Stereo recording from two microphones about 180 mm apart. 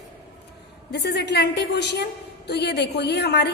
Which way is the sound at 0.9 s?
65° left (ahead or behind).